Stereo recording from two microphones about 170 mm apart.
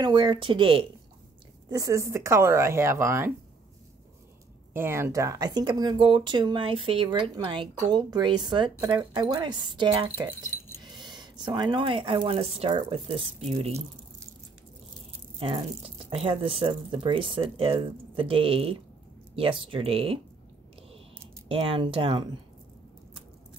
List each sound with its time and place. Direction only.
0.0 s speech: 25° right (ahead or behind)
1.7 s speech: 20° right (ahead or behind)
4.7 s speech: 15° right (ahead or behind)
10.8 s a sound: 25° right (ahead or behind)
12.3 s speech: 35° right (ahead or behind)
15.3 s speech: 35° right (ahead or behind)
21.5 s speech: 30° right (ahead or behind)